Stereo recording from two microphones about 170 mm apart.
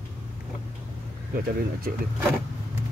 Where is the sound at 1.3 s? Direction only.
60° right (ahead or behind).